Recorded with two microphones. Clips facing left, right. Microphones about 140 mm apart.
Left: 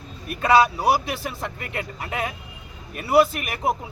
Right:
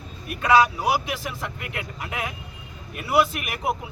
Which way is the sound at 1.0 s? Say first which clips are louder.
Left 1 dB; 35° left (ahead or behind).